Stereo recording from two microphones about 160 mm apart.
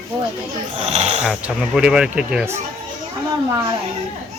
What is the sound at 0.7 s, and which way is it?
Speech, 40° right (ahead or behind).